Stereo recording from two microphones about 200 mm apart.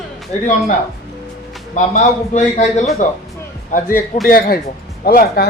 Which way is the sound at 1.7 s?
40° left (ahead or behind).